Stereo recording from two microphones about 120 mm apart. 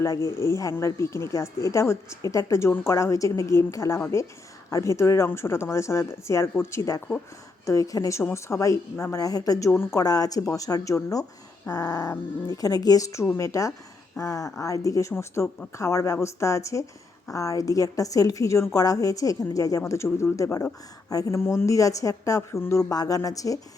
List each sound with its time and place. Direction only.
0.0 s speech: 25° left (ahead or behind)